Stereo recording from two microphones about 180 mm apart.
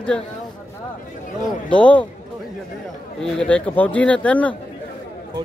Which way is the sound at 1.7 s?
5° left (ahead or behind).